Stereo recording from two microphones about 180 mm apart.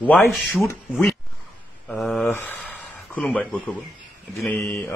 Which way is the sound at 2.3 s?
10° left (ahead or behind).